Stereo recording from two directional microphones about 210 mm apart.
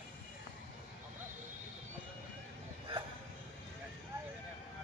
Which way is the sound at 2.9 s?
25° right (ahead or behind).